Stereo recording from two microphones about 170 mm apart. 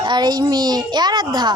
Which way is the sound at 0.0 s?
25° right (ahead or behind).